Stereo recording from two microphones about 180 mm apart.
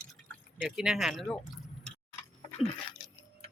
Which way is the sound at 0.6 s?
5° right (ahead or behind).